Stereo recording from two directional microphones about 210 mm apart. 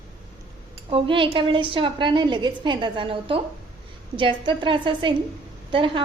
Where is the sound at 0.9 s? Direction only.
25° right (ahead or behind).